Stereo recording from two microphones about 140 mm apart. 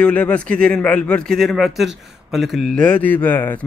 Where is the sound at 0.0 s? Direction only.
10° left (ahead or behind).